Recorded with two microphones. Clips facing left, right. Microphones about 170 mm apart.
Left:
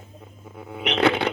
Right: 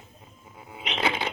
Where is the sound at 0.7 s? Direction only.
65° left (ahead or behind).